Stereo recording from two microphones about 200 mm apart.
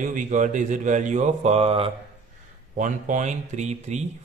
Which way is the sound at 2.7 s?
40° right (ahead or behind).